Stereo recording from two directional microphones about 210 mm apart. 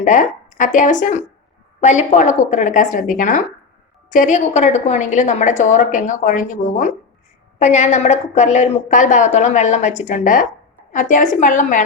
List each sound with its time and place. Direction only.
0.0 s a woman's voice: 35° left (ahead or behind)